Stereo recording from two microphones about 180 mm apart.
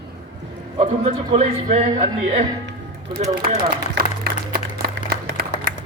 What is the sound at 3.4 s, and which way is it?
Music, 60° right (ahead or behind).